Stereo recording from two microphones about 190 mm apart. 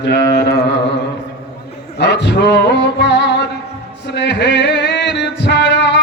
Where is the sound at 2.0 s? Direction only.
65° left (ahead or behind).